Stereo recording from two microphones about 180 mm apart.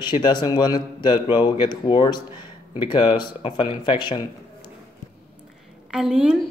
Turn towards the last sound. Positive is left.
turn(degrees=-5)  # may be behind; listen again after turning